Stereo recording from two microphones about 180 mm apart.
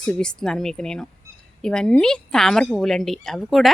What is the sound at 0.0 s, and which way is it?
Speech, 5° left (ahead or behind).